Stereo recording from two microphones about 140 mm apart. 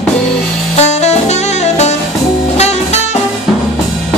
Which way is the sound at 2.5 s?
50° left (ahead or behind).